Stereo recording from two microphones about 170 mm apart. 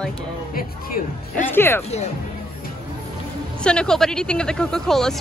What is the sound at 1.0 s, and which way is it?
Speech, 55° left (ahead or behind).